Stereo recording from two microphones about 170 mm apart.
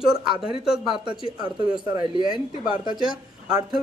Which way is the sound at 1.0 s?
25° right (ahead or behind).